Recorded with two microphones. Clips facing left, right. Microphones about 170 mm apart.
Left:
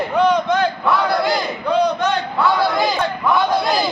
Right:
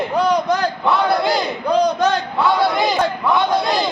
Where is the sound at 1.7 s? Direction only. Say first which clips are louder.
Right 1 dB; 40° right (ahead or behind).